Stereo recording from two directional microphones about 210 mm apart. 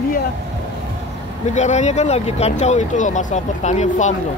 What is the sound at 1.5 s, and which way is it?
Speech, 35° left (ahead or behind).